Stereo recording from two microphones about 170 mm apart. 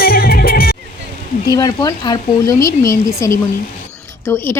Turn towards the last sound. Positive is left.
turn(degrees=10)  # may be behind; listen again after turning